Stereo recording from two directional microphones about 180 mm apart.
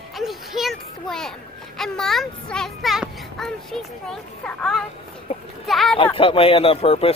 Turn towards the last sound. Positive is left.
turn(degrees=30)  # may be behind; listen again after turning